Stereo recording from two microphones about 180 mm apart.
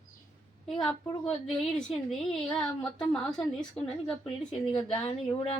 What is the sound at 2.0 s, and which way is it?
A woman's voice, centre (ahead or behind).